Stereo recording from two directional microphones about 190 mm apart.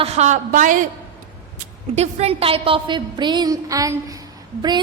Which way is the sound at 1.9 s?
35° right (ahead or behind).